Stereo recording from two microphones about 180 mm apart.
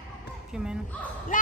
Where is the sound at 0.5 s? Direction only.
5° right (ahead or behind).